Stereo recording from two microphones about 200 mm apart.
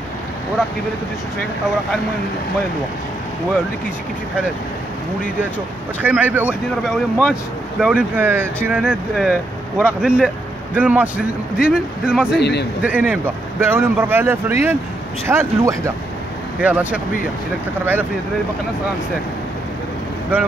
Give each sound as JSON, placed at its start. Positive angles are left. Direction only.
{"t": 6.0, "sound": "speech", "side_deg": -10}
{"t": 12.4, "sound": "a man's voice", "side_deg": 55}
{"t": 12.8, "sound": "speech", "side_deg": -10}